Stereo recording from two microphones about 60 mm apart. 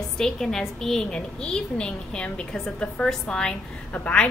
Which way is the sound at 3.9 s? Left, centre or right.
Left.